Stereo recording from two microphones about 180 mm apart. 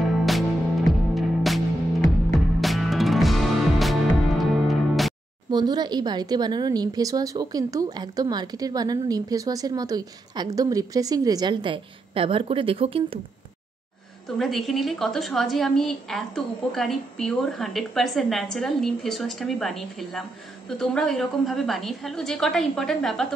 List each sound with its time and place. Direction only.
0.0 s music: centre (ahead or behind)
2.6 s music: centre (ahead or behind)
5.5 s speech: 25° right (ahead or behind)
14.4 s a woman's voice: centre (ahead or behind)